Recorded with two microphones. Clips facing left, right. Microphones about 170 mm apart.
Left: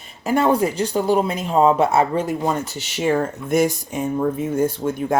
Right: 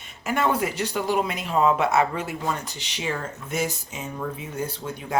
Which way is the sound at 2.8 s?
50° left (ahead or behind).